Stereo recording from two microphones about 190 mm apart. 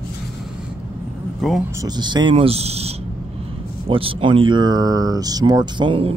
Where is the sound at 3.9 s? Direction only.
30° right (ahead or behind).